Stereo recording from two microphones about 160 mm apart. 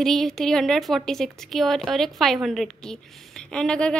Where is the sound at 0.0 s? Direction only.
Centre (ahead or behind).